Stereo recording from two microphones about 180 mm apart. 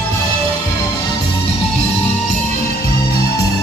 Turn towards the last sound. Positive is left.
turn(degrees=60)  # may be behind; listen again after turning